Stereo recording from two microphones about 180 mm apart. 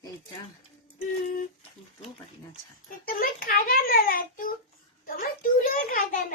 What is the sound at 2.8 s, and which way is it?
A child's voice, 55° left (ahead or behind).